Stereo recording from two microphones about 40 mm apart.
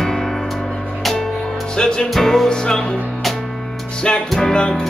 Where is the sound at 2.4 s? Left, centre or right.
Centre.